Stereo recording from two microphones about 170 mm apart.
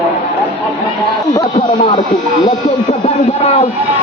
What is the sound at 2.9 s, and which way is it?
Speech, 35° left (ahead or behind).